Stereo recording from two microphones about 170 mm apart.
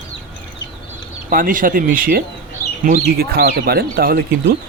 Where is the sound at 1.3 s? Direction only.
55° right (ahead or behind).